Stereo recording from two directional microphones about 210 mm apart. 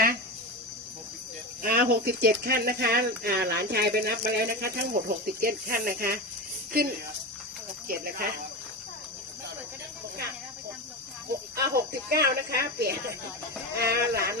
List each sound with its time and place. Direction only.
1.6 s speech: 45° right (ahead or behind)
11.3 s speech: 45° right (ahead or behind)